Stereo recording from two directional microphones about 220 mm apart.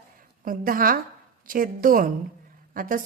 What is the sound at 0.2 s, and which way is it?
A woman's voice, 40° right (ahead or behind).